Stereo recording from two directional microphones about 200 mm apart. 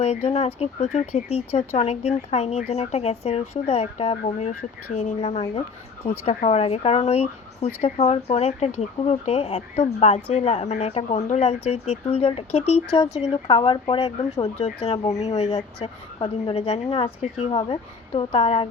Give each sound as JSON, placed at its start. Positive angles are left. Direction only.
{"t": 0.0, "sound": "a woman's voice", "side_deg": 30}